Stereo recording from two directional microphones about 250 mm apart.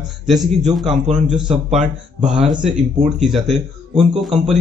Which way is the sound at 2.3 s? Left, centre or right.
Centre.